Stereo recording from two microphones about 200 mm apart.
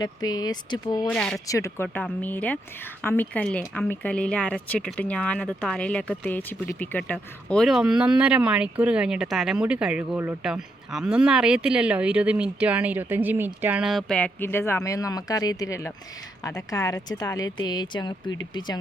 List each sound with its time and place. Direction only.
0.0 s speech: 20° left (ahead or behind)
1.0 s speech: 5° left (ahead or behind)
1.5 s speech: 15° left (ahead or behind)